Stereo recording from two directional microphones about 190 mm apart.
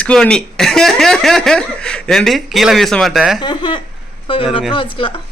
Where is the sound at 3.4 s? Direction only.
25° left (ahead or behind).